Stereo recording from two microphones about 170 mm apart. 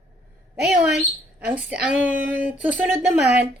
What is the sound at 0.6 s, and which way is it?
A woman's voice, 5° right (ahead or behind).